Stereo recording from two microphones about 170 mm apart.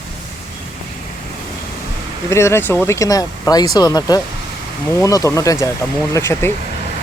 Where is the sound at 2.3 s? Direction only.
15° left (ahead or behind).